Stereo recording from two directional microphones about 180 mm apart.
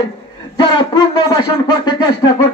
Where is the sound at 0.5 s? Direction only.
25° left (ahead or behind).